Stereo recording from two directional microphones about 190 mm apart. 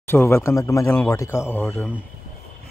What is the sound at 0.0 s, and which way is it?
Speech, 10° left (ahead or behind).